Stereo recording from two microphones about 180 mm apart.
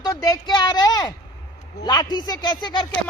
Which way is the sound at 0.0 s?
20° left (ahead or behind).